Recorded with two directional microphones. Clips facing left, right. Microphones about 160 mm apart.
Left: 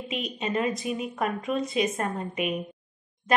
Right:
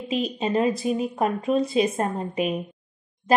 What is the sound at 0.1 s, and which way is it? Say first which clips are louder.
Speech: right 6 dB; 30° right (ahead or behind).